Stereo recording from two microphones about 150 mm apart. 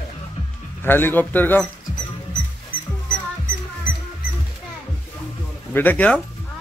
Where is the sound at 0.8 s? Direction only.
15° left (ahead or behind).